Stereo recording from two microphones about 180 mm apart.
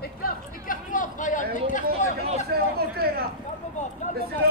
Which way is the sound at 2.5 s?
60° right (ahead or behind).